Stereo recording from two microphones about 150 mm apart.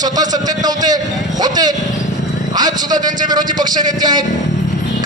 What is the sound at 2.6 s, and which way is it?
A man's voice, 30° right (ahead or behind).